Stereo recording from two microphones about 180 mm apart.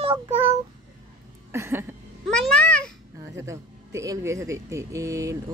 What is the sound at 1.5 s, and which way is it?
Speech, 15° right (ahead or behind).